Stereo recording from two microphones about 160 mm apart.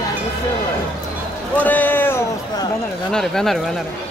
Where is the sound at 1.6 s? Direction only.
10° left (ahead or behind).